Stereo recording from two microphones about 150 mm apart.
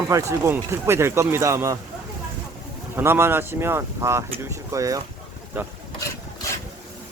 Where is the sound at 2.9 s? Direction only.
15° right (ahead or behind).